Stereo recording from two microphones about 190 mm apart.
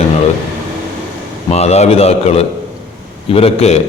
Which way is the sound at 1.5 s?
35° left (ahead or behind).